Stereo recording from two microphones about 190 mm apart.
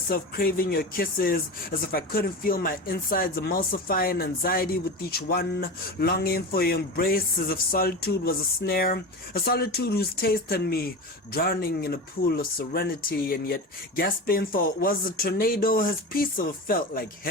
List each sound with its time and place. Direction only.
0.1 s speech: 50° left (ahead or behind)